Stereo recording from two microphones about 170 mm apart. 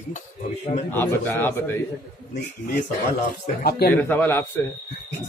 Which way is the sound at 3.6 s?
65° left (ahead or behind).